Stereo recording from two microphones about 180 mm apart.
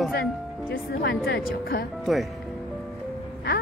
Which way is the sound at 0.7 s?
65° left (ahead or behind).